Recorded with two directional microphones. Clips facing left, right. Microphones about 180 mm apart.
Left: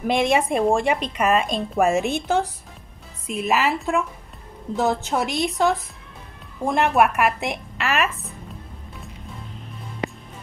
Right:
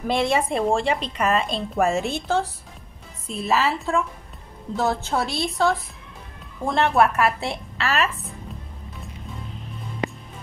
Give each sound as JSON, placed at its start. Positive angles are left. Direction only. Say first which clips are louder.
{"t": 0.0, "sound": "speech", "louder": "left 2 dB", "side_deg": 15}